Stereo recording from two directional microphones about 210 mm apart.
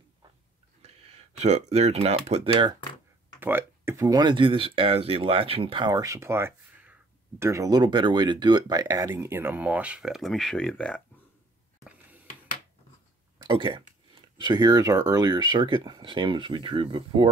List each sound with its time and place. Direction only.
0.8 s speech: 30° right (ahead or behind)
3.3 s speech: 10° right (ahead or behind)
11.8 s a sound: 10° right (ahead or behind)
13.4 s speech: 25° right (ahead or behind)